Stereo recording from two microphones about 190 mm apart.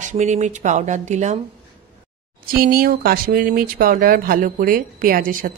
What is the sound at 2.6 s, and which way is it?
Speech, 50° right (ahead or behind).